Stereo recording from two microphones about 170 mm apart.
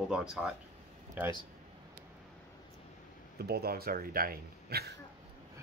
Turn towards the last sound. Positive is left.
turn(degrees=-65)  # may be behind; listen again after turning